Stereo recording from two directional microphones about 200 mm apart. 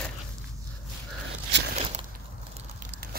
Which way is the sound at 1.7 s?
30° right (ahead or behind).